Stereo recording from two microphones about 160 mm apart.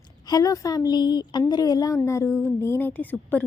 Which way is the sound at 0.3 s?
25° left (ahead or behind).